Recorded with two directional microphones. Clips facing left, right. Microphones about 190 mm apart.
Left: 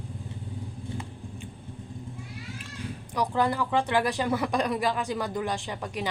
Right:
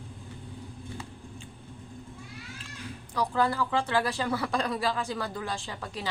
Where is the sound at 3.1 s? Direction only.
15° left (ahead or behind).